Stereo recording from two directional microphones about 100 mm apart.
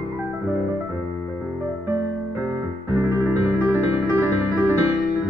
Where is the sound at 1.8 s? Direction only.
25° right (ahead or behind).